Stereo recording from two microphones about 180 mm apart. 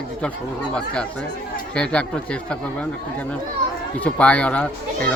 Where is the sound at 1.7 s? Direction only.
5° left (ahead or behind).